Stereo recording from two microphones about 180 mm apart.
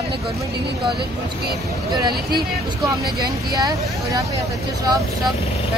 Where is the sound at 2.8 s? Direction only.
20° right (ahead or behind).